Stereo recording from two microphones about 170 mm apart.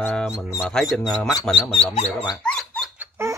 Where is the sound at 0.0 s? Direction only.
10° left (ahead or behind).